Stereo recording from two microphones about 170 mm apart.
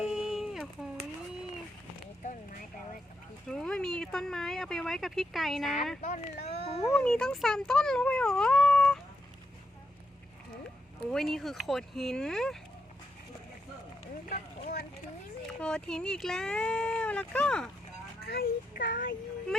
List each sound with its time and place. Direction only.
0.0 s a sound: 5° right (ahead or behind)
3.5 s a sound: 5° left (ahead or behind)
6.0 s speech: 45° left (ahead or behind)
6.8 s speech: centre (ahead or behind)
11.1 s speech: centre (ahead or behind)
14.3 s vehicle: 60° left (ahead or behind)
15.6 s speech: 5° left (ahead or behind)
18.2 s speech: 65° left (ahead or behind)